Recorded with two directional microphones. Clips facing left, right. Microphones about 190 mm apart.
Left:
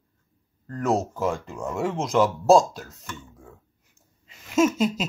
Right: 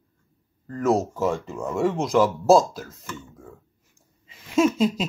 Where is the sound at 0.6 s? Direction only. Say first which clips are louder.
Right 3 dB; centre (ahead or behind).